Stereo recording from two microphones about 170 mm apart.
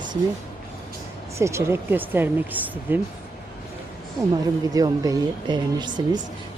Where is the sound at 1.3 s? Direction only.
15° right (ahead or behind).